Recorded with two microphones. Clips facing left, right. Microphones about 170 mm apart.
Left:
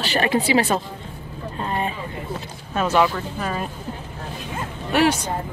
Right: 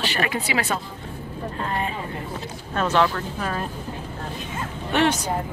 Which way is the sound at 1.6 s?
20° left (ahead or behind).